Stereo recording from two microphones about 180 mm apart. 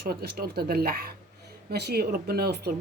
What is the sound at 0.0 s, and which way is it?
Speech, 60° right (ahead or behind).